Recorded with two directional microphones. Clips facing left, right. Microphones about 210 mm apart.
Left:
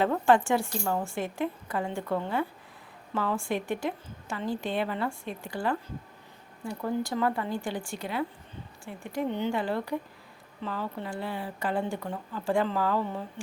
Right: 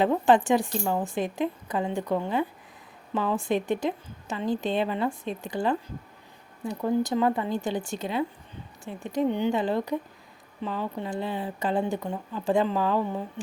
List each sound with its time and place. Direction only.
0.0 s a woman's voice: 20° right (ahead or behind)